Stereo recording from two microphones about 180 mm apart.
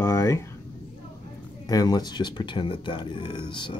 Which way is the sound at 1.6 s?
20° left (ahead or behind).